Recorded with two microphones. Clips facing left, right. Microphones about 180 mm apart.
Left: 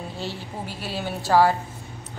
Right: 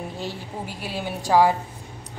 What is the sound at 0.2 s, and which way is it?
A woman's voice, 15° right (ahead or behind).